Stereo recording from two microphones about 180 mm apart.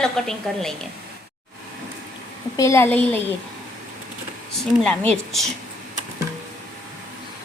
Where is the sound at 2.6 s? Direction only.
15° left (ahead or behind).